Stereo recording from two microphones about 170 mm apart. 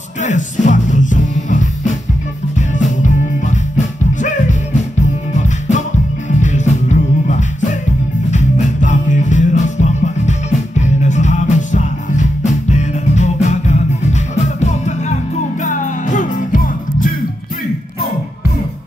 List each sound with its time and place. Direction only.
0.2 s music: 45° left (ahead or behind)
3.0 s music: 45° left (ahead or behind)
6.4 s music: 45° left (ahead or behind)